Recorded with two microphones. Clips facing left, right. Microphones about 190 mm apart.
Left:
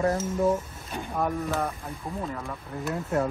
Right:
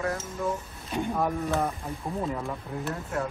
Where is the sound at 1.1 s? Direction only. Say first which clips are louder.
Left 1 dB; centre (ahead or behind).